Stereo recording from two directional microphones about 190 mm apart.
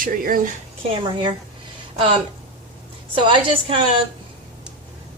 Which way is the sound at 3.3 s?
30° right (ahead or behind).